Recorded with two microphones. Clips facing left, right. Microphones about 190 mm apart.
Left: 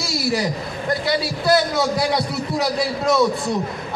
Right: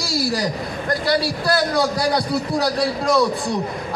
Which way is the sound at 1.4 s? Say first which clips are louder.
Left 3 dB; centre (ahead or behind).